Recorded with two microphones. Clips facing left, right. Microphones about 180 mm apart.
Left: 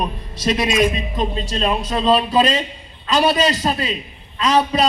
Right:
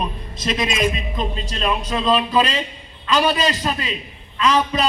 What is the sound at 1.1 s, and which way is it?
A man's voice, 35° left (ahead or behind).